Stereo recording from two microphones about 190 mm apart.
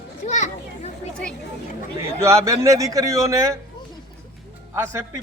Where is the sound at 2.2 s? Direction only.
15° right (ahead or behind).